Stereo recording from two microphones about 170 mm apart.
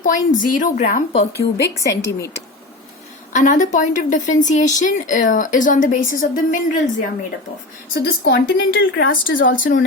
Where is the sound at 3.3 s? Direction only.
45° left (ahead or behind).